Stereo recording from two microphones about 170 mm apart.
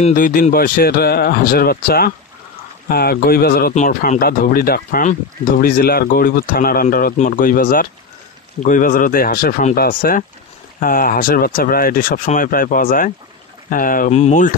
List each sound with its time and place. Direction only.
0.1 s speech: 55° left (ahead or behind)
3.7 s speech: 45° left (ahead or behind)